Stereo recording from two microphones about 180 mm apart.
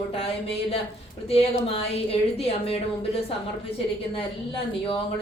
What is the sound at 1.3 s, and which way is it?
A woman's voice, 35° left (ahead or behind).